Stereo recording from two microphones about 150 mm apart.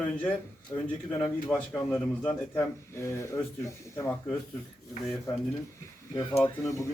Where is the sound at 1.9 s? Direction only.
10° left (ahead or behind).